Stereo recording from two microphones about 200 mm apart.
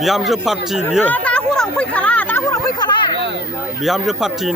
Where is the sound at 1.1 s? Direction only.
5° left (ahead or behind); by 3.0 s 20° left (ahead or behind).